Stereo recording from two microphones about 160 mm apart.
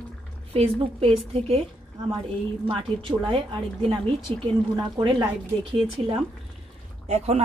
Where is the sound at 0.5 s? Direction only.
35° right (ahead or behind).